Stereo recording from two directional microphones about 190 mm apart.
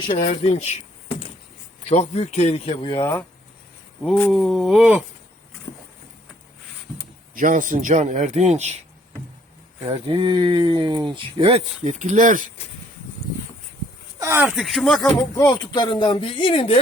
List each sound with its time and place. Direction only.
0.0 s speech: 25° left (ahead or behind)
1.8 s speech: 35° left (ahead or behind)
3.0 s speech: 10° left (ahead or behind)
4.0 s speech: centre (ahead or behind)
7.3 s a man's voice: 45° right (ahead or behind)
9.8 s speech: 30° right (ahead or behind)
14.2 s speech: 15° right (ahead or behind); by 15.1 s 5° left (ahead or behind)
15.4 s speech: 20° left (ahead or behind)